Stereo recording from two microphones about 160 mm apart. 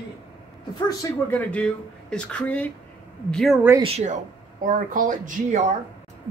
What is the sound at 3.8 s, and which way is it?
Speech, 40° right (ahead or behind).